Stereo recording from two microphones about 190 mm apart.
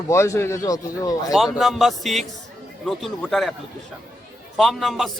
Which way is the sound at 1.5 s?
Centre (ahead or behind).